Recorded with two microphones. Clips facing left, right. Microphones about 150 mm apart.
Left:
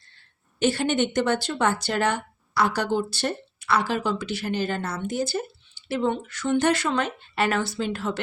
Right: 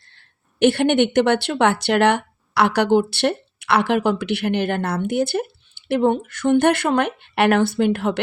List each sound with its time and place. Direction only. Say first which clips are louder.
0.6 s speech: right 7 dB; 65° right (ahead or behind)